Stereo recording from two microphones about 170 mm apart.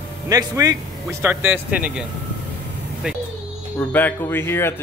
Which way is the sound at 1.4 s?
10° right (ahead or behind).